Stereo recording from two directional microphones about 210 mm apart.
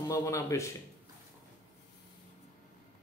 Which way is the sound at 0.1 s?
15° left (ahead or behind).